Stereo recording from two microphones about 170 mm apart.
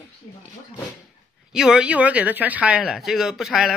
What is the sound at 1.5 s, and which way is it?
A woman's voice, 5° right (ahead or behind).